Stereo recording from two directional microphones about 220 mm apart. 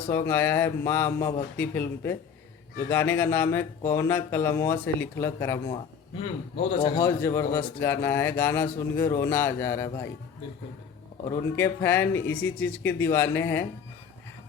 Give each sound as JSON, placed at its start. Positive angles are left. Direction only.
{"t": 0.1, "sound": "speech", "side_deg": 10}
{"t": 6.6, "sound": "a man's voice", "side_deg": 25}
{"t": 7.2, "sound": "speech", "side_deg": 10}
{"t": 11.3, "sound": "speech", "side_deg": 10}